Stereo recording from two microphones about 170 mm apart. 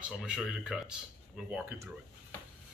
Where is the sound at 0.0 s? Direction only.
Centre (ahead or behind).